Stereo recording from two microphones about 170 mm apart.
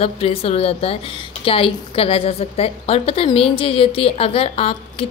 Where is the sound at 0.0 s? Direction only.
35° left (ahead or behind).